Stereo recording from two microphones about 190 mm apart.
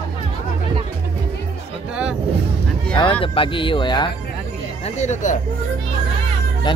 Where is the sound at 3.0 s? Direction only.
25° left (ahead or behind).